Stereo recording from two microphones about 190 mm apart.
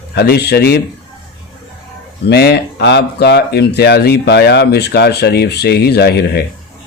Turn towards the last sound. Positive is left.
turn(degrees=55)  # may be behind; listen again after turning